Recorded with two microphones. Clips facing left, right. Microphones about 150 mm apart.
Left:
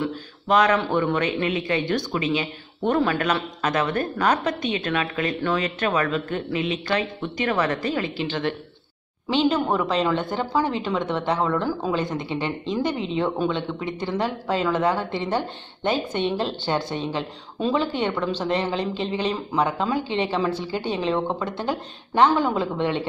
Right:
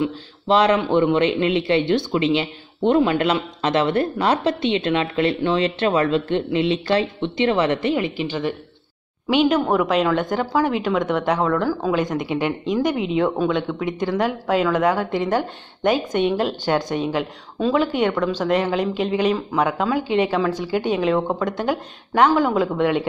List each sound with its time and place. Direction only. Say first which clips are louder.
0.1 s speech: right 2 dB; 30° right (ahead or behind); by 23.0 s 10° right (ahead or behind)